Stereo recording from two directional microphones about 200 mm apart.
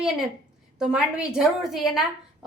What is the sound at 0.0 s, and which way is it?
A woman's voice, centre (ahead or behind).